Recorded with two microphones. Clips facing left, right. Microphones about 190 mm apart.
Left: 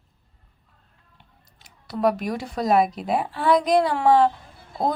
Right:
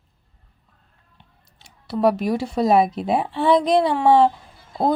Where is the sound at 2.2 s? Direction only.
30° right (ahead or behind).